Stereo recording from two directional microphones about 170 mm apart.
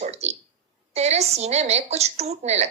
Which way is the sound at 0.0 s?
40° right (ahead or behind).